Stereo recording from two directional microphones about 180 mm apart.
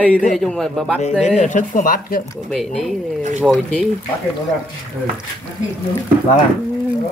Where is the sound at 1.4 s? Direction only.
45° left (ahead or behind).